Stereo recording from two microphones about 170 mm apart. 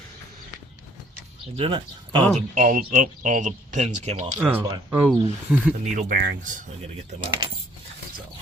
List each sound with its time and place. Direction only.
1.5 s speech: 30° right (ahead or behind)
2.6 s speech: 50° right (ahead or behind)
4.4 s speech: 10° right (ahead or behind)
5.8 s speech: 45° right (ahead or behind)
7.2 s speech: 30° right (ahead or behind)